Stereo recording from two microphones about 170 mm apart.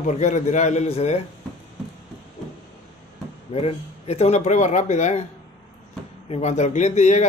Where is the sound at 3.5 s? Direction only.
35° left (ahead or behind).